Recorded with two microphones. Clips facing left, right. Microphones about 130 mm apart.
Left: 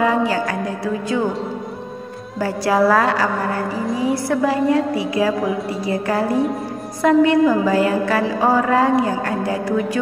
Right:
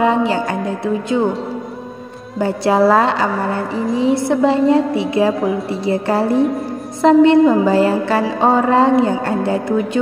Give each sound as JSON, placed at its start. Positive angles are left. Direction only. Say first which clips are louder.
{"t": 0.0, "sound": "mantra", "louder": "right 2 dB", "side_deg": -25}
{"t": 2.3, "sound": "mantra", "louder": "right 3 dB", "side_deg": -25}